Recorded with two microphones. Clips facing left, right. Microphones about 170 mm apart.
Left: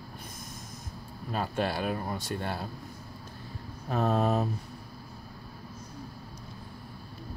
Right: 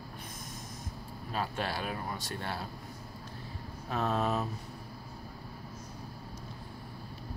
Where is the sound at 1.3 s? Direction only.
50° left (ahead or behind).